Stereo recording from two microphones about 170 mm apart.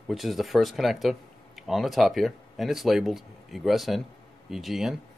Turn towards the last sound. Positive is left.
turn(degrees=0)  # may be behind; listen again after turning